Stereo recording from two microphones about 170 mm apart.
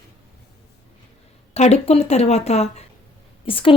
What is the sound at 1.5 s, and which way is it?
A woman's voice, 40° left (ahead or behind).